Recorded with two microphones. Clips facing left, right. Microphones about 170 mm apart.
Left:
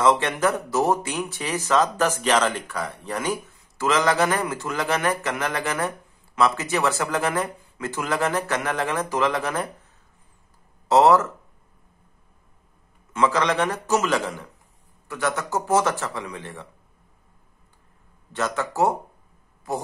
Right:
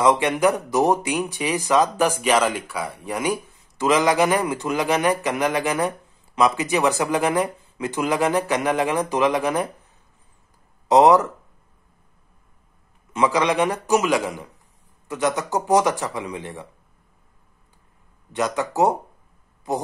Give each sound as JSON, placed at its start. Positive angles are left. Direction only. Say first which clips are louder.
{"t": 0.0, "sound": "speech", "louder": "right 2 dB", "side_deg": -15}
{"t": 10.9, "sound": "speech", "louder": "right 2 dB", "side_deg": -15}
{"t": 13.1, "sound": "speech", "louder": "right 2 dB", "side_deg": -15}
{"t": 18.3, "sound": "a man's voice", "louder": "right 3 dB", "side_deg": -15}